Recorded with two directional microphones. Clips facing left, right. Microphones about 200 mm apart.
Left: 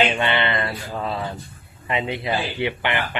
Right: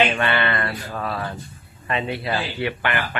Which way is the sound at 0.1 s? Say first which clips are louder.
Even; 20° left (ahead or behind).